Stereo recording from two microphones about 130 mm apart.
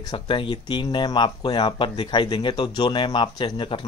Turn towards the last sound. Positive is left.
turn(degrees=40)  # may be behind; listen again after turning